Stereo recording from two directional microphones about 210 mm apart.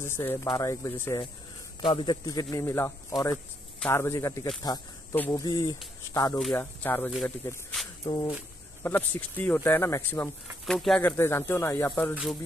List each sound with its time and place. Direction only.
0.0 s speech: 10° left (ahead or behind)
1.8 s speech: 25° left (ahead or behind)
5.4 s speech: 20° left (ahead or behind)
6.3 s speech: 5° left (ahead or behind)
8.0 s speech: 20° left (ahead or behind)
8.8 s speech: 10° left (ahead or behind)
10.6 s speech: centre (ahead or behind)